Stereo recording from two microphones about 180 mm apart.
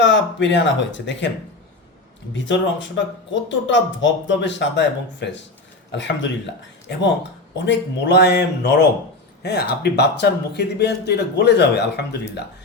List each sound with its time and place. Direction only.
0.0 s speech: 80° left
2.3 s speech: 85° left; by 12.0 s 70° left (ahead or behind)